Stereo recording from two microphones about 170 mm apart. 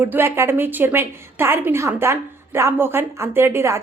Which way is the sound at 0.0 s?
10° right (ahead or behind).